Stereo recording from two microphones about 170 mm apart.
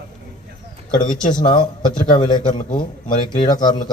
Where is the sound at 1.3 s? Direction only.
25° left (ahead or behind).